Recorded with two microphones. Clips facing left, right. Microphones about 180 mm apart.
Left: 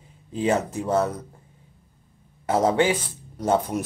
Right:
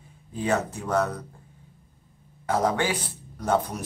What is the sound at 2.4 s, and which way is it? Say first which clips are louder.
Speech: left 4 dB; 25° left (ahead or behind).